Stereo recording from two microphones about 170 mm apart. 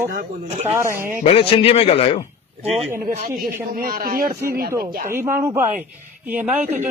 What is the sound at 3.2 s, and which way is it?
A man's voice, 60° right (ahead or behind).